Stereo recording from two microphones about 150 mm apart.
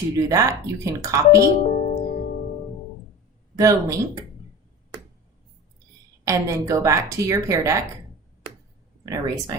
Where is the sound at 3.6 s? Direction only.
20° right (ahead or behind).